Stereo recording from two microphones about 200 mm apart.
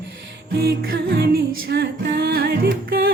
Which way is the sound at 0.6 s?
50° right (ahead or behind).